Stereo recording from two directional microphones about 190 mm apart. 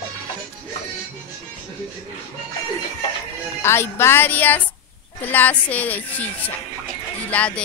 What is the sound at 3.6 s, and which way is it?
Speech, 10° left (ahead or behind).